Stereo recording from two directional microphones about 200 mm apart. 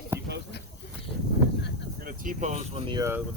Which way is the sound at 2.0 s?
40° right (ahead or behind).